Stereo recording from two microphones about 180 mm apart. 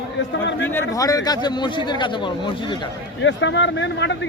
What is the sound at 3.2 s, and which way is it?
Speech, 90° left.